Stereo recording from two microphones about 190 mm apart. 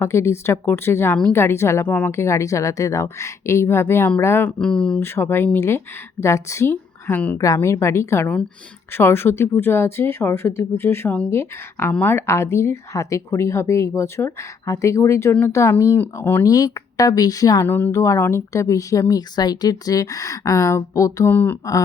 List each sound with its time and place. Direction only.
0.0 s a woman's voice: 15° left (ahead or behind)